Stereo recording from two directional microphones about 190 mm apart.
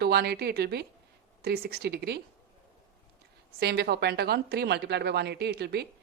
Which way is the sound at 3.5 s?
60° right (ahead or behind).